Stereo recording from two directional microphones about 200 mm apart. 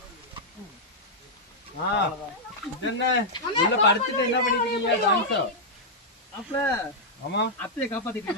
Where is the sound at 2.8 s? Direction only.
65° left (ahead or behind).